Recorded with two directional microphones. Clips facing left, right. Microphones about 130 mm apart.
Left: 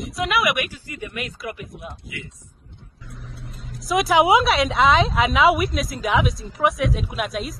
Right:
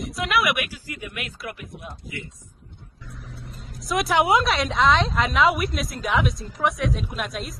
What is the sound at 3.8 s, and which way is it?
Speech, centre (ahead or behind).